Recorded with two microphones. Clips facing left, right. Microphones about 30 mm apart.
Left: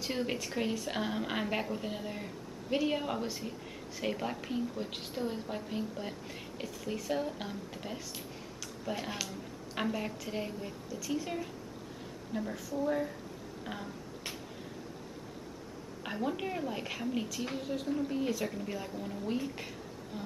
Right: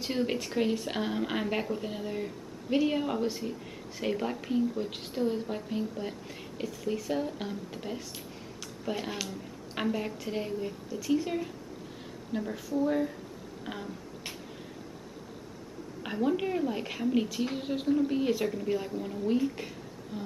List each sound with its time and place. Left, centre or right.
0.0 s a woman's voice: centre
11.2 s a woman's voice: centre
12.3 s a woman's voice: centre
13.7 s a sound: centre
16.0 s a woman's voice: centre
17.6 s a woman's voice: right
18.5 s speech: centre
20.1 s a sound: centre